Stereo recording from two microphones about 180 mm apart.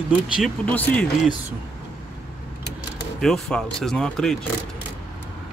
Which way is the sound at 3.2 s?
5° left (ahead or behind).